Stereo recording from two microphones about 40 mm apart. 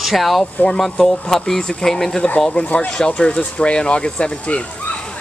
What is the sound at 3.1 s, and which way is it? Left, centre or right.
Speech, left.